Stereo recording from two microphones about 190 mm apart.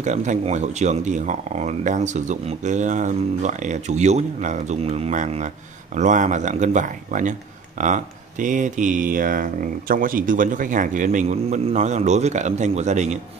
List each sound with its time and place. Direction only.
0.0 s speech: 40° right (ahead or behind)